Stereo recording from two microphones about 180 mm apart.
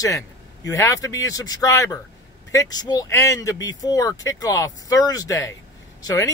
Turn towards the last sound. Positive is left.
turn(degrees=20)  # may be behind; listen again after turning